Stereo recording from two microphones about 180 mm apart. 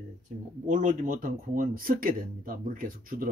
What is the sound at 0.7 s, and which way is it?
Speech, 45° right (ahead or behind).